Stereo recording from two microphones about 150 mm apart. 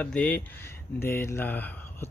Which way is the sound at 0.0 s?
10° left (ahead or behind).